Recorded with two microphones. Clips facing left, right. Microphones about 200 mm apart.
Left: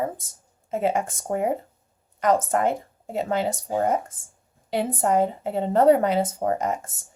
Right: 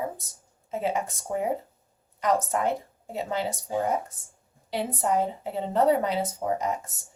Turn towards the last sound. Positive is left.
turn(degrees=50)  # may be behind; listen again after turning